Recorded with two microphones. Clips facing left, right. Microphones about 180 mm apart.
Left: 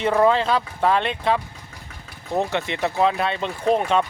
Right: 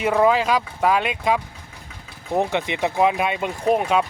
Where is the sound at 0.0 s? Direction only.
10° right (ahead or behind).